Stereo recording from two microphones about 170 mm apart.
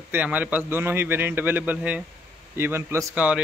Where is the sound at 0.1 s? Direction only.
10° right (ahead or behind).